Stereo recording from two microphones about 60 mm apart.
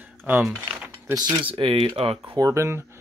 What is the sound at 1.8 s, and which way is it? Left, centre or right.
Speech, right.